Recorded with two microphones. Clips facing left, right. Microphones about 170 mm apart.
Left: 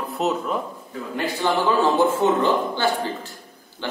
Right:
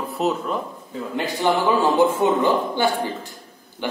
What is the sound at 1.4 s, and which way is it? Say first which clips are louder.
A man's voice: right 1 dB; 15° right (ahead or behind).